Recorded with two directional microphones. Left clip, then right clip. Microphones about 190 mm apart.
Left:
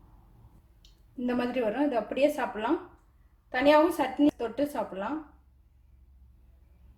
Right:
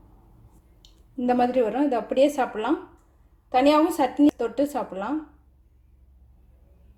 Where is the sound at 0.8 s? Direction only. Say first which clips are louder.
Right 6 dB; 25° right (ahead or behind).